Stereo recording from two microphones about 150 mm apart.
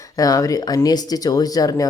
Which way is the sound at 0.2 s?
25° left (ahead or behind).